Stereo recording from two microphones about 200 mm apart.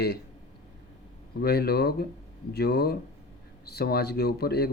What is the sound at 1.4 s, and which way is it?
Speech, 50° left (ahead or behind).